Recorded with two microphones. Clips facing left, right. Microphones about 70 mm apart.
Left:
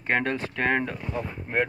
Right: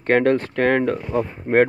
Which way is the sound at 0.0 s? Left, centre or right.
Right.